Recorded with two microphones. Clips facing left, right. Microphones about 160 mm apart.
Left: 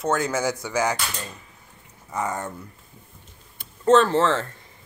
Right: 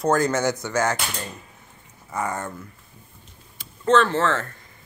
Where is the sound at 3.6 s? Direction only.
40° left (ahead or behind).